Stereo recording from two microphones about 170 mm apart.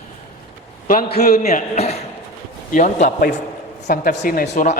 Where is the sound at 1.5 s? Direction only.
40° left (ahead or behind).